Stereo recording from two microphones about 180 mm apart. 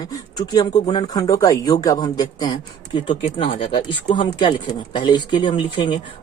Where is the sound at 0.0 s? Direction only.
25° left (ahead or behind).